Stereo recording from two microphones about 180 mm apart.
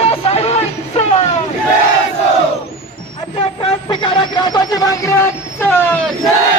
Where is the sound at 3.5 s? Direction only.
25° left (ahead or behind); by 6.1 s 5° left (ahead or behind).